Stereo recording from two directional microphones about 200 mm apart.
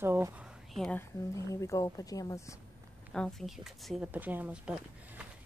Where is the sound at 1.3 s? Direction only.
15° left (ahead or behind).